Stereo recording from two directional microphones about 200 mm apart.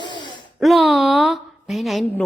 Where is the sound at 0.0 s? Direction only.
25° left (ahead or behind).